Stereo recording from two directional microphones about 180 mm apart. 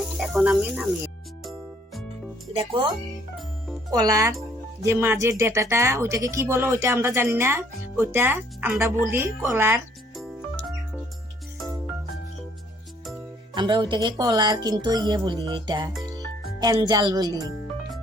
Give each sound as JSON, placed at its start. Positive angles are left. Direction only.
{"t": 0.2, "sound": "speech", "side_deg": -5}
{"t": 2.5, "sound": "speech", "side_deg": -30}
{"t": 3.9, "sound": "speech", "side_deg": -20}
{"t": 13.5, "sound": "speech", "side_deg": -25}